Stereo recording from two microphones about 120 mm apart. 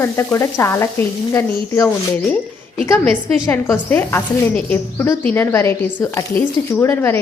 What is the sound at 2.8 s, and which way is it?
Speech, 10° left (ahead or behind).